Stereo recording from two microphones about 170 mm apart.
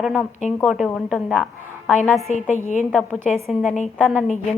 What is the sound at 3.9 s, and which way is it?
Speech, 5° right (ahead or behind).